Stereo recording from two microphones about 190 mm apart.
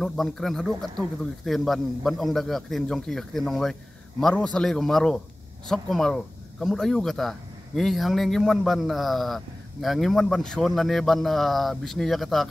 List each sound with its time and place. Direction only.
0.0 s speech: centre (ahead or behind)